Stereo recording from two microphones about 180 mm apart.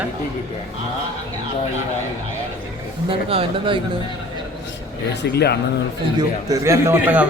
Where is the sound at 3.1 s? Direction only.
30° right (ahead or behind).